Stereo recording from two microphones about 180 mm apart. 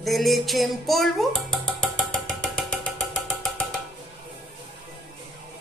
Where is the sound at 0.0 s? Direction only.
Centre (ahead or behind).